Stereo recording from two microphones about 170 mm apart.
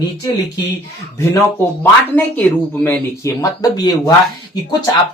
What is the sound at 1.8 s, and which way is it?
A man's voice, 10° left (ahead or behind).